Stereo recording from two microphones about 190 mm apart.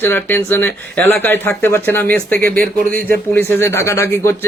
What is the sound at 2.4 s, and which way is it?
Speech, 50° right (ahead or behind).